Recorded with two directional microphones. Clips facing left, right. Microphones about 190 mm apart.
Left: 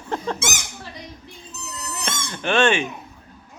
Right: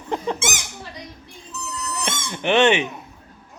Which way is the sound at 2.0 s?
20° right (ahead or behind).